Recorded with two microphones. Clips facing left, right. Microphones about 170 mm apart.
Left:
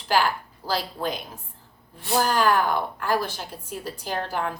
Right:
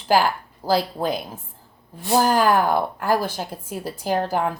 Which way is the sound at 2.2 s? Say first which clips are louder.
Right 3 dB; 45° right (ahead or behind).